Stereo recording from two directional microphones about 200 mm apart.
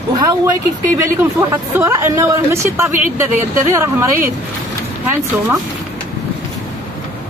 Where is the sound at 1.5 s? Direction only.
15° right (ahead or behind).